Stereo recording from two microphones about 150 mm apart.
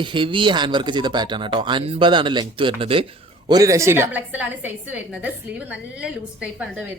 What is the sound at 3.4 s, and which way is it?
A woman's voice, 25° right (ahead or behind).